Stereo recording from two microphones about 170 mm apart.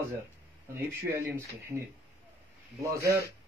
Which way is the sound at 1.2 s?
15° right (ahead or behind).